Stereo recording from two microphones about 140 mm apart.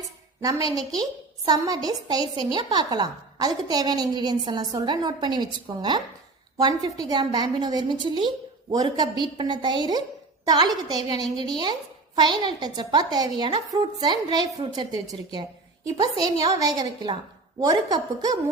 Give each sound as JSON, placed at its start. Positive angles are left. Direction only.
{"t": 0.4, "sound": "a woman's voice", "side_deg": -25}